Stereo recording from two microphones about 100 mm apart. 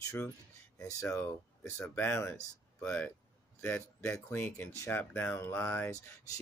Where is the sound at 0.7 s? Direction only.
30° left (ahead or behind).